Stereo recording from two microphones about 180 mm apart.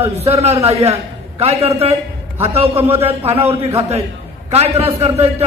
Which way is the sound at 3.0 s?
35° right (ahead or behind).